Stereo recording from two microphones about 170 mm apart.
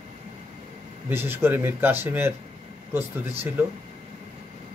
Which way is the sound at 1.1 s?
15° right (ahead or behind).